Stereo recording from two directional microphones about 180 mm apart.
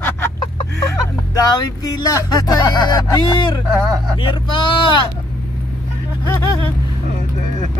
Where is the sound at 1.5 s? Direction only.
20° left (ahead or behind).